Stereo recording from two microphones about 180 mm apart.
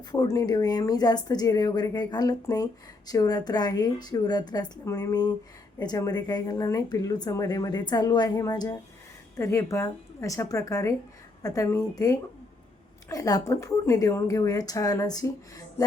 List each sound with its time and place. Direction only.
0.1 s a woman's voice: 20° left (ahead or behind)